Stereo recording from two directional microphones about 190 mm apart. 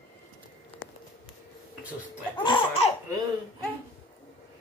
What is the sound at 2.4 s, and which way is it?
Laughter, 30° left (ahead or behind).